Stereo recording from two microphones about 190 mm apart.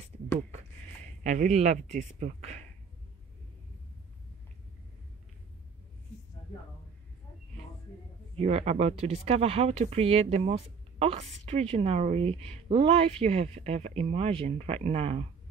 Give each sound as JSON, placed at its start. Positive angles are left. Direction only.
{"t": 1.0, "sound": "speech", "side_deg": -40}
{"t": 8.4, "sound": "speech", "side_deg": -35}